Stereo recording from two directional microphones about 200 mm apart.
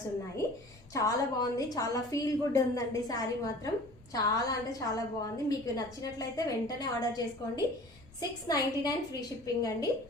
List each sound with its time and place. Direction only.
0.9 s a woman's voice: 15° left (ahead or behind)